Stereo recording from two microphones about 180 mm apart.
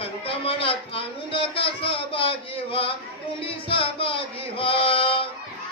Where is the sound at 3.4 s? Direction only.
30° left (ahead or behind).